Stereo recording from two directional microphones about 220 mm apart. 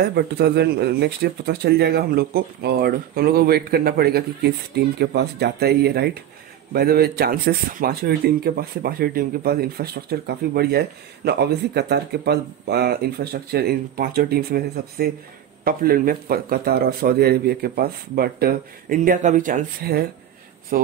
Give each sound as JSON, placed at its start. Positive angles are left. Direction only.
{"t": 0.0, "sound": "speech", "side_deg": -50}